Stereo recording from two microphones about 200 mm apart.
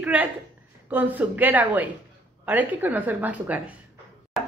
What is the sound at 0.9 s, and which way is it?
A woman's voice, 10° right (ahead or behind).